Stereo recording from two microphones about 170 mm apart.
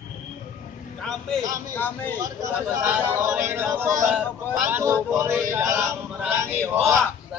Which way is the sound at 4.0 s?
Centre (ahead or behind).